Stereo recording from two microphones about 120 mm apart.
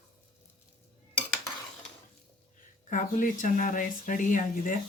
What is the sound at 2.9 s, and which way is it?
Speech, 90° left.